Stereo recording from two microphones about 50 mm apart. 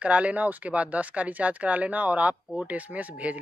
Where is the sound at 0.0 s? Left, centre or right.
Right.